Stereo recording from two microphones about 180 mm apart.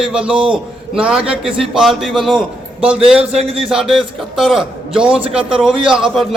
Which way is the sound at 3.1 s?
35° right (ahead or behind).